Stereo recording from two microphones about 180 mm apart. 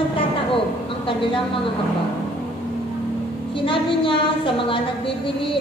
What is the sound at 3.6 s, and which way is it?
A woman's voice, 30° left (ahead or behind).